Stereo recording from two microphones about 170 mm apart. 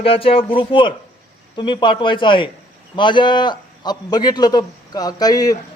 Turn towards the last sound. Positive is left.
turn(degrees=20)  # may be behind; listen again after turning